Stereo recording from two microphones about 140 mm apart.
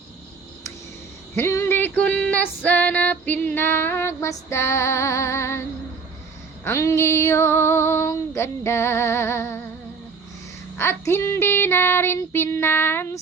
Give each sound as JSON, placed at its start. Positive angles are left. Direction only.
{"t": 1.4, "sound": "female singing", "side_deg": 15}
{"t": 6.7, "sound": "female singing", "side_deg": 20}
{"t": 10.8, "sound": "female singing", "side_deg": 15}